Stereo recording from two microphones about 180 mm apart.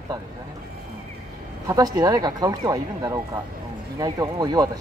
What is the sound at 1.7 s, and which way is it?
A man's voice, 20° right (ahead or behind).